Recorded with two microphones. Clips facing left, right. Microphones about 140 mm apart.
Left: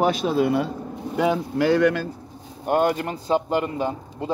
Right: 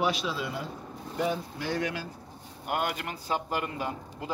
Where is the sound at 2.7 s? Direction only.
30° left (ahead or behind).